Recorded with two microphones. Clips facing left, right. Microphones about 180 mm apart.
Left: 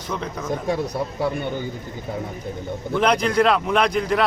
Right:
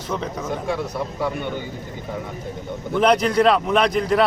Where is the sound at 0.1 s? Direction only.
5° right (ahead or behind).